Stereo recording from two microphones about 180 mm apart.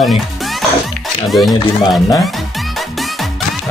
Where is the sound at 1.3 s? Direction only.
Centre (ahead or behind).